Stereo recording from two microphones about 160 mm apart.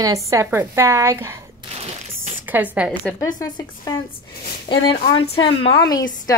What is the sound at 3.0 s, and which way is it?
A woman's voice, 20° left (ahead or behind).